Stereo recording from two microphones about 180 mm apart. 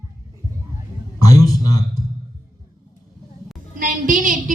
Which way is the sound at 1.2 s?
20° left (ahead or behind).